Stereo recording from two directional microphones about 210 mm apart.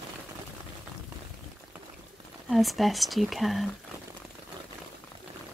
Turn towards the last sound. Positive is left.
turn(degrees=0)  # may be behind; listen again after turning